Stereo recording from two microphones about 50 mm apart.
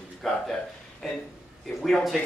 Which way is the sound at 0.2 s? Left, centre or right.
Centre.